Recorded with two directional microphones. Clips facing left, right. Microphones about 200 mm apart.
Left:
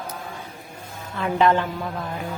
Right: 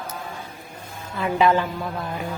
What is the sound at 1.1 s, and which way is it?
Speech, 5° right (ahead or behind).